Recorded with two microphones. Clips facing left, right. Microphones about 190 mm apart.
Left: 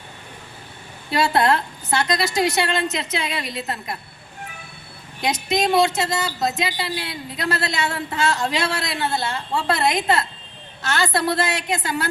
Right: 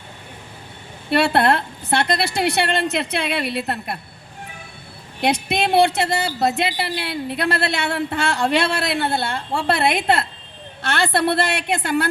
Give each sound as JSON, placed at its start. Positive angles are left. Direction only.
{"t": 1.1, "sound": "a woman's voice", "side_deg": -60}
{"t": 5.2, "sound": "a woman's voice", "side_deg": -60}